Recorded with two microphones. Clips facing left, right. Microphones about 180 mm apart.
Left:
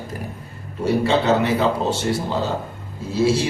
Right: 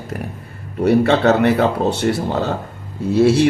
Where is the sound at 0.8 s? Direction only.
60° right (ahead or behind).